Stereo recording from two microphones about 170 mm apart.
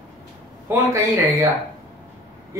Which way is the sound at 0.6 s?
20° right (ahead or behind).